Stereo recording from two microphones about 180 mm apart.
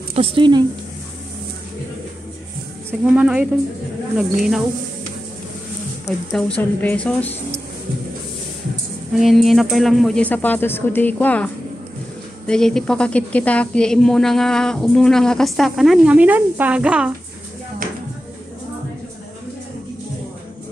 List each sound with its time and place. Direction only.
0.1 s speech: 30° right (ahead or behind)
2.9 s a woman's voice: 10° right (ahead or behind)
6.0 s speech: 5° left (ahead or behind)
9.2 s a woman's voice: centre (ahead or behind)